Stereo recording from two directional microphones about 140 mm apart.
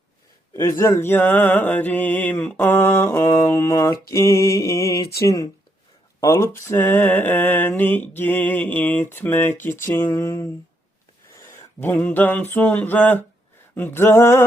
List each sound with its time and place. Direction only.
0.5 s mantra: 20° left (ahead or behind)
6.1 s speech: 20° left (ahead or behind)
6.7 s mantra: 15° left (ahead or behind)
11.3 s a sound: 20° left (ahead or behind)
13.7 s mantra: 15° left (ahead or behind)